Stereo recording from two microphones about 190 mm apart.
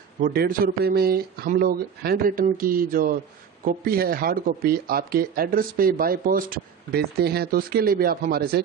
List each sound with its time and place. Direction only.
0.2 s speech: 50° right (ahead or behind)